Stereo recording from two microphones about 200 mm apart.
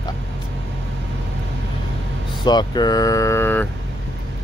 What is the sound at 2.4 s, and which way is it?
Speech, 20° left (ahead or behind).